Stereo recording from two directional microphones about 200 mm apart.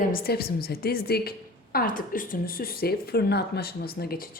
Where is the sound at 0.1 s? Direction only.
50° left (ahead or behind).